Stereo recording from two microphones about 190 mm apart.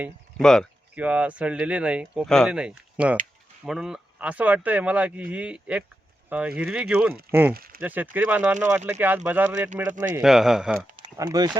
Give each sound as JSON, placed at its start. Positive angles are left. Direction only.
{"t": 0.3, "sound": "speech", "side_deg": 5}
{"t": 0.9, "sound": "speech", "side_deg": -5}
{"t": 7.5, "sound": "speech", "side_deg": -50}
{"t": 7.8, "sound": "speech", "side_deg": -10}
{"t": 10.9, "sound": "a sound", "side_deg": -25}